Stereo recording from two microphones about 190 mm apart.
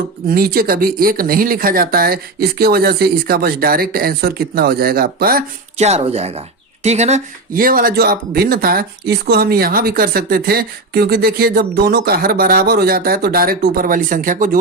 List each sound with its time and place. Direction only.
0.3 s speech: 50° right (ahead or behind)
5.7 s speech: 35° right (ahead or behind)